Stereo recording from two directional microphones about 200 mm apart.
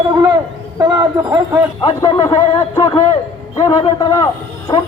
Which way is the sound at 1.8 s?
20° left (ahead or behind).